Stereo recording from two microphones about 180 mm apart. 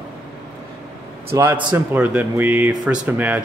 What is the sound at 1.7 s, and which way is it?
Speech, 10° right (ahead or behind).